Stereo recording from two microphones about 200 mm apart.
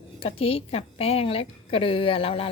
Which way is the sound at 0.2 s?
30° left (ahead or behind).